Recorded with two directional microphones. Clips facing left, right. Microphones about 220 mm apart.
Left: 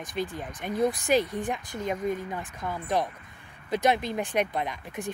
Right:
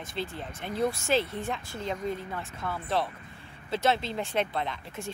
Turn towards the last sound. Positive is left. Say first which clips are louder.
# left 2 dB
turn(degrees=15)  # may be behind; listen again after turning